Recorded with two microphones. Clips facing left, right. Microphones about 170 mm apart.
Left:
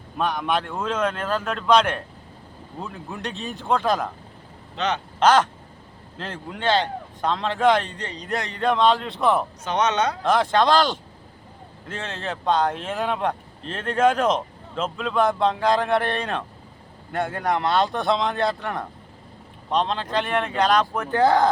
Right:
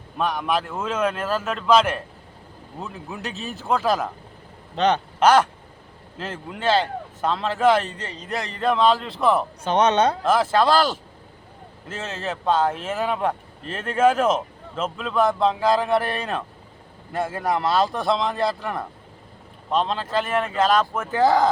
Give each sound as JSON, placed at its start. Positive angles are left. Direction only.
{"t": 0.2, "sound": "speech", "side_deg": 0}
{"t": 5.2, "sound": "a sound", "side_deg": -10}
{"t": 6.1, "sound": "speech", "side_deg": -5}
{"t": 9.6, "sound": "speech", "side_deg": -30}
{"t": 10.2, "sound": "speech", "side_deg": -5}